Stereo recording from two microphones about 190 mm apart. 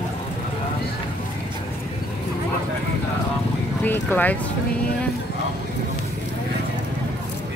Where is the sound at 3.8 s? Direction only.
10° left (ahead or behind).